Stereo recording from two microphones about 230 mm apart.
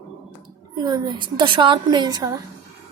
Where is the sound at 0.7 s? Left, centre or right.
Centre.